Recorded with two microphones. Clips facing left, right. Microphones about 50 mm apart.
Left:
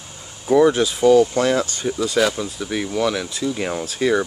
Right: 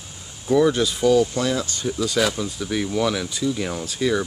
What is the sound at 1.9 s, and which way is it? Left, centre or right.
Speech, centre.